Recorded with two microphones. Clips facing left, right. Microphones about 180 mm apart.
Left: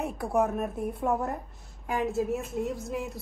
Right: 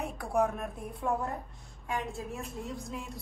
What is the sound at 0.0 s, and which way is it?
Speech, centre (ahead or behind).